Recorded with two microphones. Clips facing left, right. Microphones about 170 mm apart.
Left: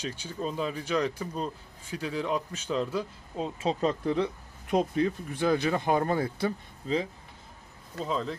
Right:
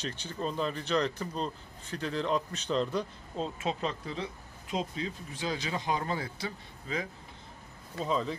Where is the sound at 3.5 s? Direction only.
40° left (ahead or behind).